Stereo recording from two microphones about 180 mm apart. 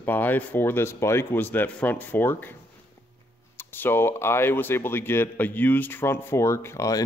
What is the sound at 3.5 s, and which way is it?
Speech, 10° left (ahead or behind).